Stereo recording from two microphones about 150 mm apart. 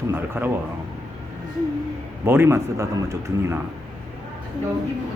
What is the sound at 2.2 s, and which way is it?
Speech, 15° right (ahead or behind).